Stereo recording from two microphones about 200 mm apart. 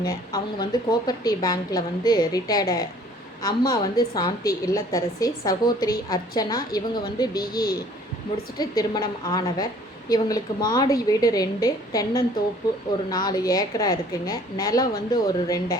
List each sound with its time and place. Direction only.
0.0 s a woman's voice: 20° left (ahead or behind)